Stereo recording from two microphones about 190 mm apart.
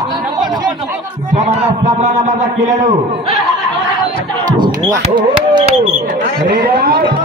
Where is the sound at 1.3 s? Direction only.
40° right (ahead or behind).